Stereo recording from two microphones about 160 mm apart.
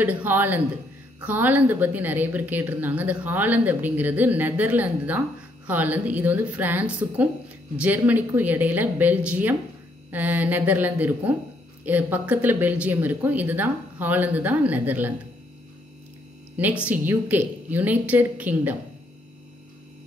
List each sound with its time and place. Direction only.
0.0 s a woman's voice: 10° right (ahead or behind)
16.5 s a woman's voice: 10° right (ahead or behind)